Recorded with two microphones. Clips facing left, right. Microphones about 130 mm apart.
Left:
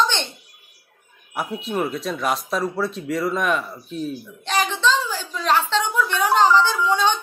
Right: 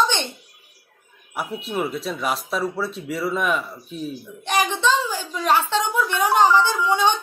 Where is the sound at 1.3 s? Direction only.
5° right (ahead or behind).